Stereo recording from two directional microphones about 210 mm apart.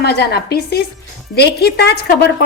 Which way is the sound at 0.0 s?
50° left (ahead or behind).